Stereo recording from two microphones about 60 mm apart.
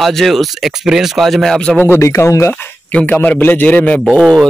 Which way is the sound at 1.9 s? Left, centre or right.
Left.